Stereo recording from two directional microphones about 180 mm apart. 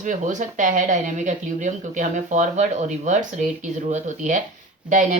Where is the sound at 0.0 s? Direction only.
45° right (ahead or behind).